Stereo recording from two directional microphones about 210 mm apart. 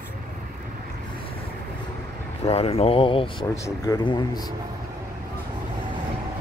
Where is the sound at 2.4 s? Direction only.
30° left (ahead or behind).